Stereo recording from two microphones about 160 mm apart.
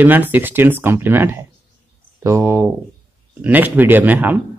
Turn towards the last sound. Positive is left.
turn(degrees=-10)  # may be behind; listen again after turning